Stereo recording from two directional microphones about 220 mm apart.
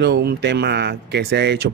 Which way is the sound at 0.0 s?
50° right (ahead or behind).